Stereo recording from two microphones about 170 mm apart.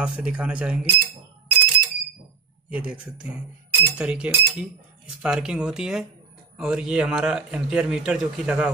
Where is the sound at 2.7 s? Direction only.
5° right (ahead or behind).